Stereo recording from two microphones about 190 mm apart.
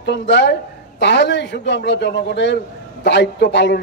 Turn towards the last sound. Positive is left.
turn(degrees=65)  # may be behind; listen again after turning